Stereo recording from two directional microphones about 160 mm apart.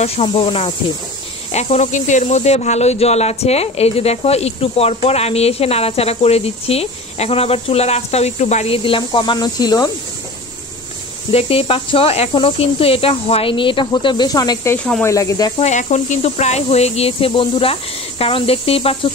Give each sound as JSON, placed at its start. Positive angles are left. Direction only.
{"t": 0.4, "sound": "speech", "side_deg": 35}
{"t": 11.3, "sound": "speech", "side_deg": 35}
{"t": 15.6, "sound": "speech", "side_deg": 50}